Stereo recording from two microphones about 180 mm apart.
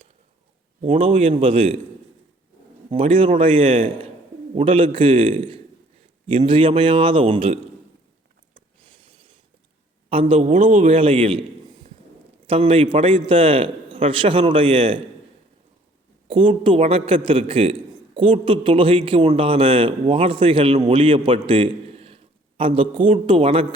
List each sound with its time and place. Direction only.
0.9 s a man's voice: 35° right (ahead or behind)
2.9 s a man's voice: 30° right (ahead or behind)
9.0 s a sound: 25° right (ahead or behind)
10.1 s a man's voice: 30° right (ahead or behind)
10.5 s a man's voice: 45° right (ahead or behind)
12.5 s a man's voice: 30° right (ahead or behind)
16.3 s a man's voice: 30° right (ahead or behind)